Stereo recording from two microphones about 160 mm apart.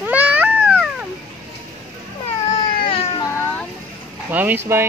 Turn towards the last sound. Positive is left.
turn(degrees=-15)  # may be behind; listen again after turning